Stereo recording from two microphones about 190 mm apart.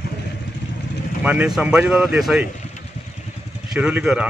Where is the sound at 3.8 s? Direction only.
5° right (ahead or behind).